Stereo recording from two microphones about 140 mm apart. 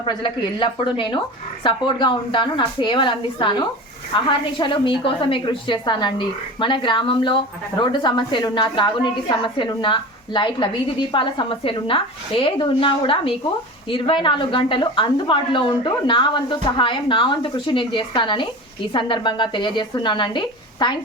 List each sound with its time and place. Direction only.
0.0 s a woman's voice: 35° left (ahead or behind)